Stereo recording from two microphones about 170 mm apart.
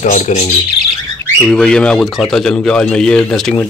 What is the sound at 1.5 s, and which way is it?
A man's voice, 5° left (ahead or behind).